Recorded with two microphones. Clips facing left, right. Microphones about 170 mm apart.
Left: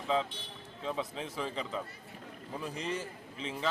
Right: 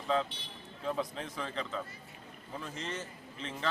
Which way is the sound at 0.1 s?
Centre (ahead or behind).